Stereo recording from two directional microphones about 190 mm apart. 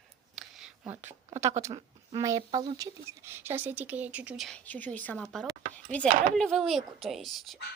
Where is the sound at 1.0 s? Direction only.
40° right (ahead or behind).